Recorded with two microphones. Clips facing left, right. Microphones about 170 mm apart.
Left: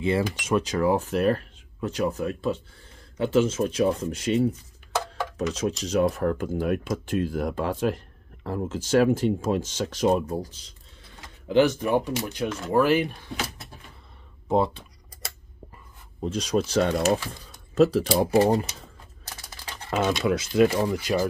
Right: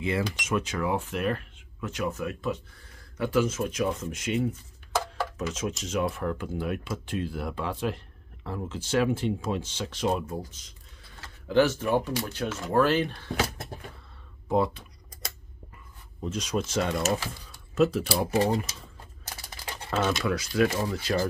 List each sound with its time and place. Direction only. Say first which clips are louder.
0.5 s speech: left 7 dB; 35° left (ahead or behind)
11.1 s speech: left 2 dB; 15° left (ahead or behind)
12.4 s speech: left 3 dB; 5° right (ahead or behind)
12.7 s speech: left 2 dB; 10° left (ahead or behind)
14.5 s speech: left 2 dB; 25° left (ahead or behind)
16.2 s speech: left 5 dB; 35° left (ahead or behind)
18.0 s speech: left 5 dB; 20° left (ahead or behind)
18.3 s speech: left 5 dB; 35° left (ahead or behind)
19.9 s speech: left 3 dB; 15° left (ahead or behind)